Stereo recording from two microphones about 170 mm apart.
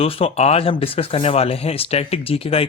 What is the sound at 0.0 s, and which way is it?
Speech, 35° left (ahead or behind).